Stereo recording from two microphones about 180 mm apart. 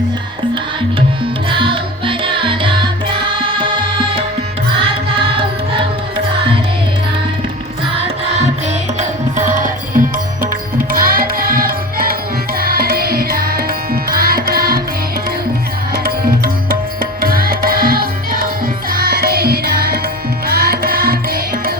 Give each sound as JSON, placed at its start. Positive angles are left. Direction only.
{"t": 1.5, "sound": "music", "side_deg": -30}
{"t": 9.0, "sound": "tabla", "side_deg": -45}
{"t": 10.9, "sound": "music", "side_deg": -55}
{"t": 16.0, "sound": "music", "side_deg": -55}